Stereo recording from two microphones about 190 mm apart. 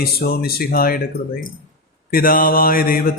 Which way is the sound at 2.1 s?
50° left (ahead or behind).